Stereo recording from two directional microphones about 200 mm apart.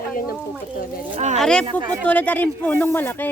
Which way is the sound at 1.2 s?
35° right (ahead or behind).